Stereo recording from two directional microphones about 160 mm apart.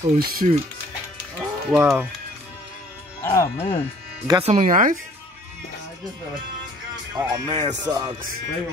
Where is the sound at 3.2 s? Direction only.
20° left (ahead or behind).